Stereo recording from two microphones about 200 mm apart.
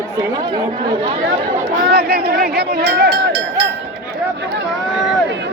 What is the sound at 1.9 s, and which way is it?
Speech, 50° right (ahead or behind).